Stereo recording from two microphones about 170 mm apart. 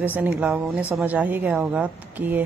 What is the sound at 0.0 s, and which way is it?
Speech, 10° right (ahead or behind).